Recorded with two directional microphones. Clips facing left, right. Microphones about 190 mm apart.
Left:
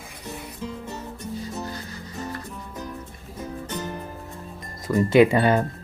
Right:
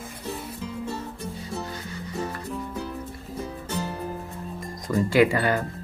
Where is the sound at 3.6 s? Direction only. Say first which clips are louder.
Right 1 dB; 10° right (ahead or behind).